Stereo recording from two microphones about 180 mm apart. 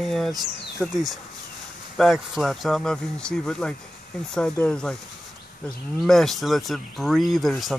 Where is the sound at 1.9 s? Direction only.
Centre (ahead or behind).